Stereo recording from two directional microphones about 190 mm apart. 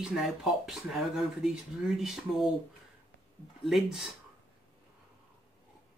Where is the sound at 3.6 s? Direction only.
Centre (ahead or behind).